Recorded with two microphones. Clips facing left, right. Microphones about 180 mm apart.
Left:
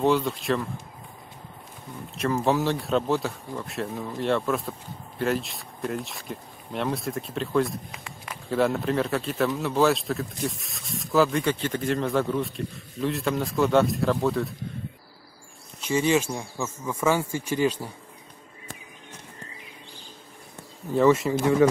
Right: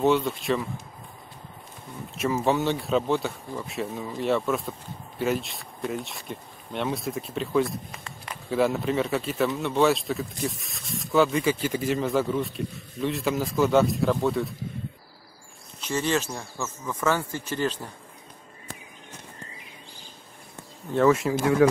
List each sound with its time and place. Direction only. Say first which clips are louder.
0.0 s speech: even; centre (ahead or behind)
2.1 s speech: even; centre (ahead or behind)
15.8 s speech: left 3 dB; 10° left (ahead or behind)
20.9 s speech: left 1 dB; centre (ahead or behind)